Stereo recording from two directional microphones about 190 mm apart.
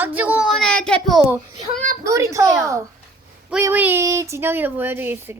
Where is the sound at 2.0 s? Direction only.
15° right (ahead or behind).